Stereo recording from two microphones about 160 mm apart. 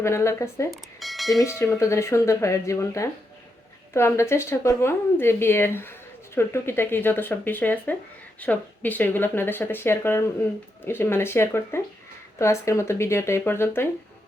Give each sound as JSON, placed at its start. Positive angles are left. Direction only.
{"t": 0.0, "sound": "a woman's voice", "side_deg": 15}
{"t": 0.7, "sound": "bell", "side_deg": 0}
{"t": 1.4, "sound": "a woman's voice", "side_deg": 15}